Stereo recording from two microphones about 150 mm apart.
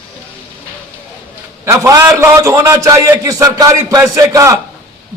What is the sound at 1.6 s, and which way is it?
A man's voice, 20° right (ahead or behind).